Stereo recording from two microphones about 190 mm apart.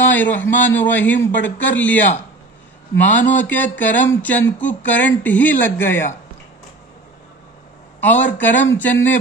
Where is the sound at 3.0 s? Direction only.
40° left (ahead or behind).